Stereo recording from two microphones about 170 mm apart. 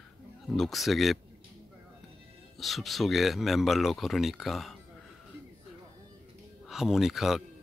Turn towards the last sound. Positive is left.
turn(degrees=0)  # may be behind; listen again after turning